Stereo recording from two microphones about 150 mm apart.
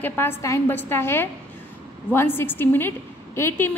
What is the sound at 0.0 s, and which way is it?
A woman's voice, 15° left (ahead or behind).